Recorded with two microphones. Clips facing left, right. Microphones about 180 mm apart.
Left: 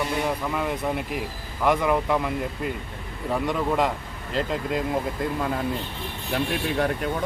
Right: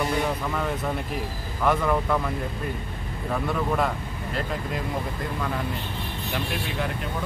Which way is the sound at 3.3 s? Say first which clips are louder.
Left 2 dB; 15° left (ahead or behind).